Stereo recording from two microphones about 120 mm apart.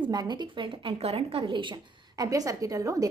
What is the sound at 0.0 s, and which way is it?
A woman's voice, 35° right (ahead or behind).